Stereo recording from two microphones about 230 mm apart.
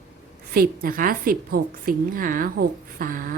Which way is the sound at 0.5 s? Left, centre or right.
Right.